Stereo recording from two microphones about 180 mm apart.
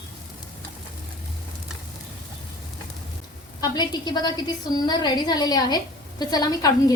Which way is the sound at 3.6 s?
25° left (ahead or behind).